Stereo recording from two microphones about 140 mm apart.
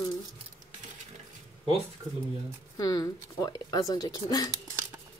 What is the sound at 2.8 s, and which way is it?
Speech, 25° left (ahead or behind).